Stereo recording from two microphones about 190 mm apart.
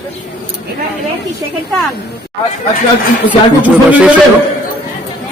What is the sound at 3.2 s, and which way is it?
Speech, 10° right (ahead or behind).